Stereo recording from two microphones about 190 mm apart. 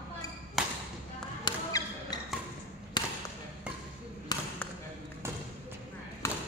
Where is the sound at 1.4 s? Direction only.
20° left (ahead or behind).